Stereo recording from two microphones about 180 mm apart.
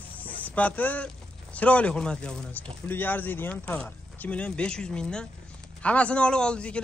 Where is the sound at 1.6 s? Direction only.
10° left (ahead or behind).